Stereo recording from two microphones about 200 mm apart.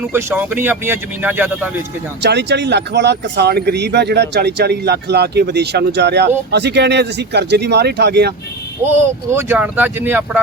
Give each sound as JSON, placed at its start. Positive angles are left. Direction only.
{"t": 0.0, "sound": "speech", "side_deg": -10}
{"t": 2.2, "sound": "speech", "side_deg": -60}
{"t": 8.8, "sound": "speech", "side_deg": -10}